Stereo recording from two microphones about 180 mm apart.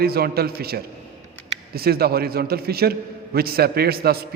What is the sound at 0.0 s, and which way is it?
A man's voice, 60° right (ahead or behind).